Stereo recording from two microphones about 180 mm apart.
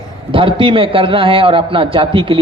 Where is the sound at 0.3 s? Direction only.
30° right (ahead or behind).